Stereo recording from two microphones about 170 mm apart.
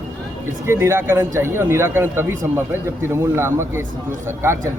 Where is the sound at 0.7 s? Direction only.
15° right (ahead or behind).